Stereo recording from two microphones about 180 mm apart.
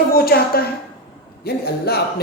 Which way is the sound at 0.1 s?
60° left (ahead or behind).